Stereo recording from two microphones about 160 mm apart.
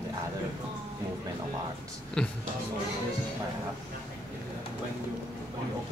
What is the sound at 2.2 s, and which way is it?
Speech, 5° left (ahead or behind).